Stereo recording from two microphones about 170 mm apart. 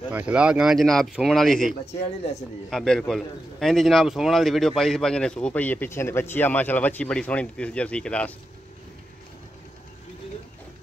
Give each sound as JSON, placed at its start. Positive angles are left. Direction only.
{"t": 0.1, "sound": "a man's voice", "side_deg": -10}